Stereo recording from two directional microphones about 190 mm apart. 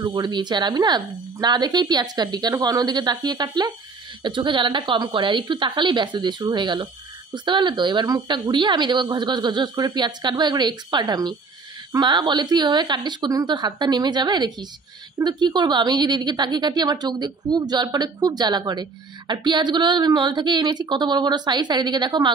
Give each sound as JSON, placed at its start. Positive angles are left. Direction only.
{"t": 0.0, "sound": "a woman's voice", "side_deg": -20}